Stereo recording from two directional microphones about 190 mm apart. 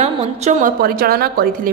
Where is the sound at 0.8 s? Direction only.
55° right (ahead or behind).